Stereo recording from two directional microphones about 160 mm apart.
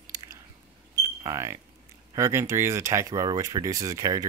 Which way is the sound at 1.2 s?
20° right (ahead or behind).